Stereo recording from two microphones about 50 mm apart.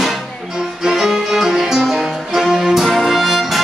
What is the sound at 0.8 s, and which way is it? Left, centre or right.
Music, centre.